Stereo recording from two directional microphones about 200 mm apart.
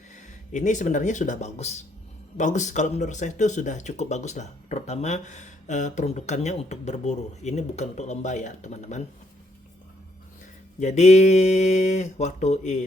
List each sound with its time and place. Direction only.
0.2 s speech: 35° left (ahead or behind)
10.8 s speech: 35° left (ahead or behind)